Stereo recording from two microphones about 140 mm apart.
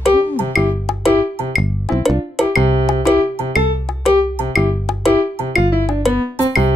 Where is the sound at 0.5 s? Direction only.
Centre (ahead or behind).